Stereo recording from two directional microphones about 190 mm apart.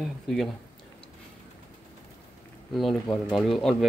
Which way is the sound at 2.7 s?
Centre (ahead or behind).